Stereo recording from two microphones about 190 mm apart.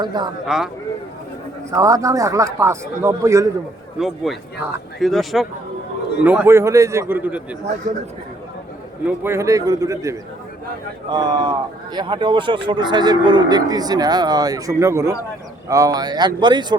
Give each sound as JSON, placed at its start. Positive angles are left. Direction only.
{"t": 0.0, "sound": "speech", "side_deg": -20}
{"t": 0.4, "sound": "speech", "side_deg": -5}
{"t": 1.7, "sound": "speech", "side_deg": -20}
{"t": 3.9, "sound": "speech", "side_deg": 0}
{"t": 9.0, "sound": "speech", "side_deg": -10}